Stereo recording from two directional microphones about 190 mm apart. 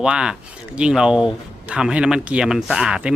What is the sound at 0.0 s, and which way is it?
Speech, 5° right (ahead or behind).